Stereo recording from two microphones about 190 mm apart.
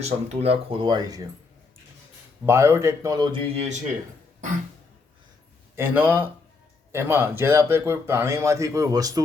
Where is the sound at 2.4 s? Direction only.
15° right (ahead or behind); by 3.8 s 35° right (ahead or behind).